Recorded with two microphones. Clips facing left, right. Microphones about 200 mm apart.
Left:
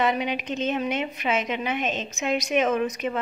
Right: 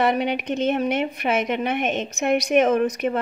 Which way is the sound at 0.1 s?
60° right (ahead or behind).